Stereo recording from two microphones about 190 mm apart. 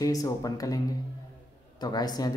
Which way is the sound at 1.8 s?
20° left (ahead or behind).